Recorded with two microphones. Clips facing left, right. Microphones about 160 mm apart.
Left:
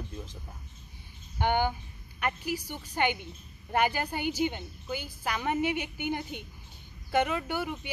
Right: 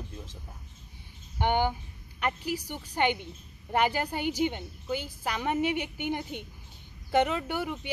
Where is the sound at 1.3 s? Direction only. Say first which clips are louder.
Right 1 dB; 25° right (ahead or behind).